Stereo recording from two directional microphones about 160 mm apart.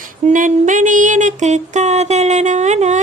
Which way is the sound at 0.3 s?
50° right (ahead or behind).